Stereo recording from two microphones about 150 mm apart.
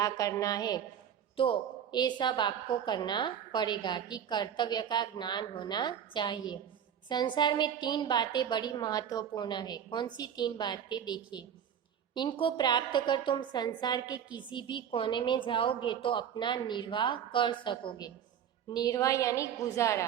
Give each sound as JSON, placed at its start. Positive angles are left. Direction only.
{"t": 0.0, "sound": "a woman's voice", "side_deg": 20}